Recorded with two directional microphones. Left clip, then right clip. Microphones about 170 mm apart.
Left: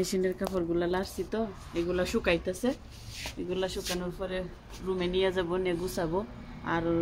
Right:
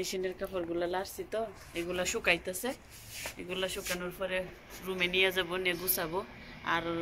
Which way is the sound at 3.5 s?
30° left (ahead or behind).